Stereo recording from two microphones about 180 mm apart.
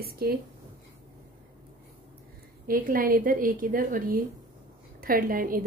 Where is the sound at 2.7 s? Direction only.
50° right (ahead or behind).